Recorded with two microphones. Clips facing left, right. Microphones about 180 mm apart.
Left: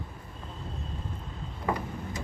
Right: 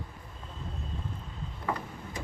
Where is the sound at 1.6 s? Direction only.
15° left (ahead or behind).